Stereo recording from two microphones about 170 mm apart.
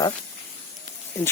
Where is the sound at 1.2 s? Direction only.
15° left (ahead or behind).